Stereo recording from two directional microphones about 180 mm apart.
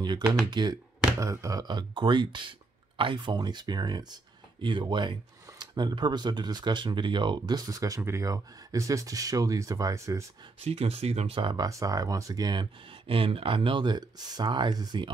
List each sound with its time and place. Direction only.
0.0 s speech: 25° right (ahead or behind)
10.6 s speech: 35° right (ahead or behind)